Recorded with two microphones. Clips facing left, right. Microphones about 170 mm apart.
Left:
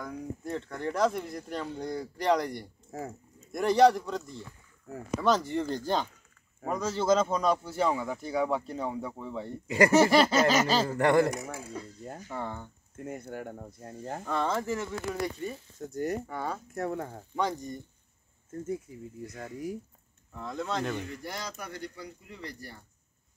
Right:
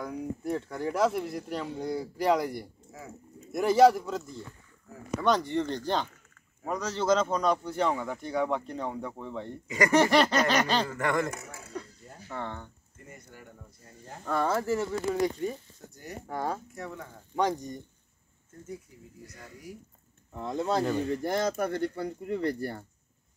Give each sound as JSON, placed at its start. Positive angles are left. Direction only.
{"t": 0.0, "sound": "speech", "side_deg": -10}
{"t": 2.9, "sound": "speech", "side_deg": 45}
{"t": 3.5, "sound": "a man's voice", "side_deg": -5}
{"t": 10.9, "sound": "a man's voice", "side_deg": 30}
{"t": 12.3, "sound": "a man's voice", "side_deg": 10}
{"t": 13.0, "sound": "speech", "side_deg": 60}
{"t": 14.2, "sound": "speech", "side_deg": -5}
{"t": 15.9, "sound": "speech", "side_deg": 50}
{"t": 16.3, "sound": "speech", "side_deg": -10}
{"t": 16.7, "sound": "speech", "side_deg": 50}
{"t": 17.4, "sound": "speech", "side_deg": -15}
{"t": 19.2, "sound": "speech", "side_deg": 50}
{"t": 20.3, "sound": "speech", "side_deg": -30}
{"t": 21.0, "sound": "speech", "side_deg": -45}